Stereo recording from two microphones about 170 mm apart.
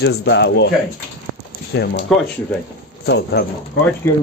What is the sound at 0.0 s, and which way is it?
Speech, 85° left.